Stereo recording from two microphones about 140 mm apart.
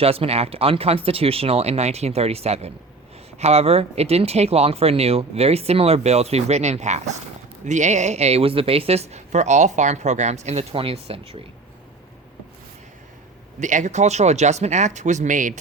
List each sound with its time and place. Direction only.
0.0 s speech: 45° right (ahead or behind)
13.6 s speech: 60° right (ahead or behind)